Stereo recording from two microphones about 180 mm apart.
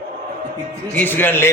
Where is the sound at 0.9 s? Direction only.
10° left (ahead or behind).